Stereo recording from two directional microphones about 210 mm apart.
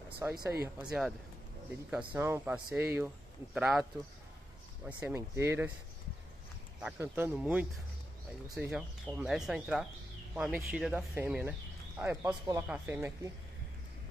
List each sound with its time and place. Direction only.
0.2 s speech: 15° right (ahead or behind)
0.8 s speech: centre (ahead or behind)
4.8 s speech: 10° right (ahead or behind)
6.8 s speech: 5° right (ahead or behind)